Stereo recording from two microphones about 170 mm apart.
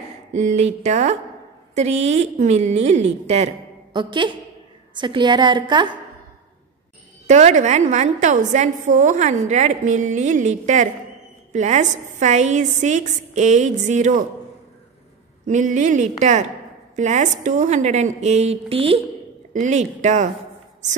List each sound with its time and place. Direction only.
0.3 s a woman's voice: 45° right (ahead or behind)
3.9 s a woman's voice: 30° right (ahead or behind)
7.2 s a woman's voice: 45° right (ahead or behind)
15.4 s a woman's voice: 45° right (ahead or behind)
19.5 s a woman's voice: 45° right (ahead or behind)